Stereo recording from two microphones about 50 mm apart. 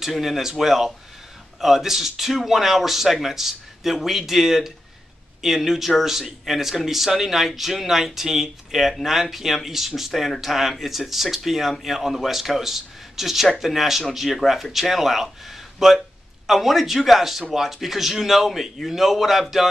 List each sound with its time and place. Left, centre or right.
0.0 s speech: centre